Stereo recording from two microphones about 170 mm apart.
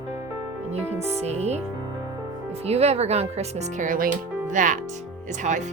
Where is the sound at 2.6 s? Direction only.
40° right (ahead or behind).